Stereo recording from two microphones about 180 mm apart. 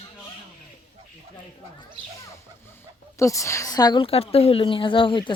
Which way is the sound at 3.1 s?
15° left (ahead or behind).